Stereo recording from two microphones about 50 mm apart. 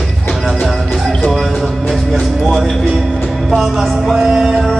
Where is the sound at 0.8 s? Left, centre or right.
Centre.